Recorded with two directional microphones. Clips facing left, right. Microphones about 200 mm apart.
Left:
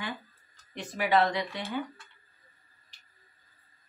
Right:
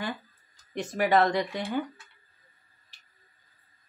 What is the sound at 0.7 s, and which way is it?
Speech, 45° right (ahead or behind).